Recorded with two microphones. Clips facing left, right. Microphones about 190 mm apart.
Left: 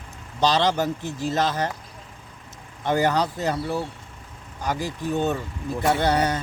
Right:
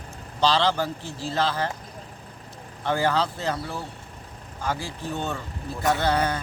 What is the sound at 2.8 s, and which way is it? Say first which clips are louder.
Speech: left 2 dB; 20° left (ahead or behind).